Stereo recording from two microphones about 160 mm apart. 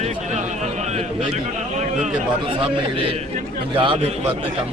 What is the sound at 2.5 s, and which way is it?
A man's voice, 35° right (ahead or behind).